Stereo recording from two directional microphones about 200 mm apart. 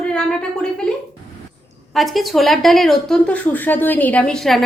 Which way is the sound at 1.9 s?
Centre (ahead or behind).